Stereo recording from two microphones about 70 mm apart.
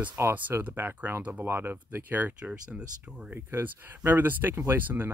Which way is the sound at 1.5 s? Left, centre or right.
Right.